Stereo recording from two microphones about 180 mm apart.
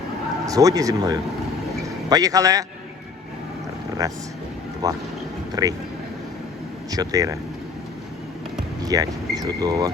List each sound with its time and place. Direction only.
0.4 s speech: 20° right (ahead or behind)
4.0 s speech: 20° right (ahead or behind)
6.9 s speech: 20° right (ahead or behind)
8.8 s speech: 20° right (ahead or behind)